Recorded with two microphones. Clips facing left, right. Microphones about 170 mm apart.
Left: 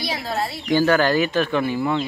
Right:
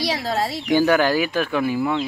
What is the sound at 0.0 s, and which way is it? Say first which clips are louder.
Speech: right 3 dB; 90° right.